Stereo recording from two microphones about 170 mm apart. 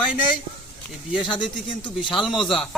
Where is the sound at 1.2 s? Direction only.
30° left (ahead or behind).